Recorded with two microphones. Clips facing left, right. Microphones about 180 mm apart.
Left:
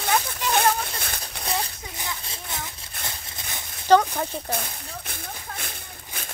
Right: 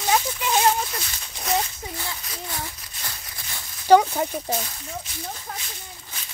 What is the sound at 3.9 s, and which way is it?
Speech, 15° right (ahead or behind).